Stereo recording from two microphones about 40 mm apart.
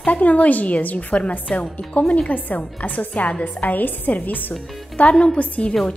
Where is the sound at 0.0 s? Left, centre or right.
Left.